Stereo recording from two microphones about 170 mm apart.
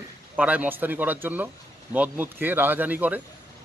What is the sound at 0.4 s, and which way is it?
Speech, 10° right (ahead or behind).